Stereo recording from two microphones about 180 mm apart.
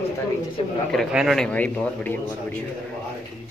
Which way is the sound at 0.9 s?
Centre (ahead or behind).